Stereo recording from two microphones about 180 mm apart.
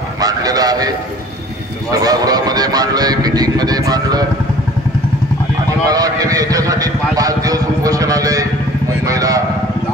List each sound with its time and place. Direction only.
0.2 s vehicle: 20° right (ahead or behind)
1.9 s speech: 20° right (ahead or behind)
5.9 s speech: 20° right (ahead or behind)